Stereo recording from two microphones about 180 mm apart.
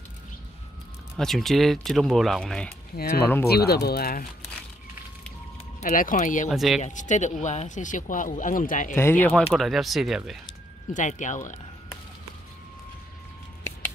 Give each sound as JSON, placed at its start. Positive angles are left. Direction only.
{"t": 1.1, "sound": "speech", "side_deg": 0}
{"t": 3.0, "sound": "speech", "side_deg": 60}
{"t": 5.8, "sound": "speech", "side_deg": 50}
{"t": 6.5, "sound": "speech", "side_deg": 0}
{"t": 6.8, "sound": "speech", "side_deg": 45}
{"t": 9.2, "sound": "speech", "side_deg": 5}
{"t": 10.9, "sound": "speech", "side_deg": 45}